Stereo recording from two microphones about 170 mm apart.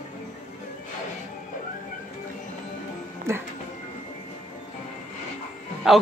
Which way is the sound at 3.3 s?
15° right (ahead or behind).